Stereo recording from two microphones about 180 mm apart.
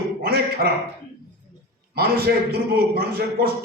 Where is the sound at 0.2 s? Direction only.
60° right (ahead or behind).